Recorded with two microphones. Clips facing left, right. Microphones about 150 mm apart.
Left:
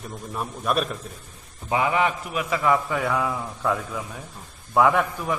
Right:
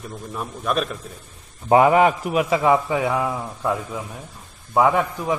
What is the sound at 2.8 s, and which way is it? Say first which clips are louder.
A man's voice: right 3 dB; 15° right (ahead or behind).